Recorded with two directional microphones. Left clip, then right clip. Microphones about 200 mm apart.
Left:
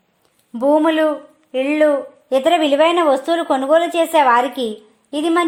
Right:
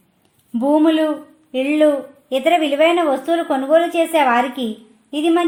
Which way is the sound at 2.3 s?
35° left (ahead or behind).